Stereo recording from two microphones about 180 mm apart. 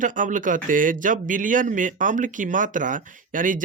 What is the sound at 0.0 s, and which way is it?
Speech, 45° right (ahead or behind).